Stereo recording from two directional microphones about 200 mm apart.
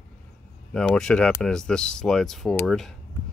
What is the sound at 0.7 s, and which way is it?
Speech, 5° left (ahead or behind).